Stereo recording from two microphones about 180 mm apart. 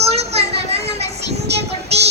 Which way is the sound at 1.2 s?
65° right (ahead or behind).